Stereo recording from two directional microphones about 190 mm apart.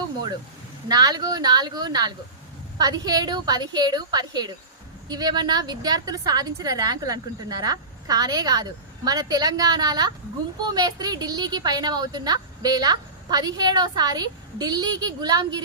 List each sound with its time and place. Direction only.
0.9 s a woman's voice: 20° right (ahead or behind)